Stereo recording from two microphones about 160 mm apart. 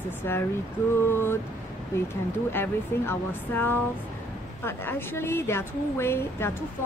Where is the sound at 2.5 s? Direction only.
15° left (ahead or behind).